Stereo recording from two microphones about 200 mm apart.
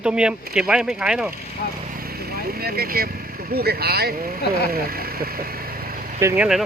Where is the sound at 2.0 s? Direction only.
50° right (ahead or behind).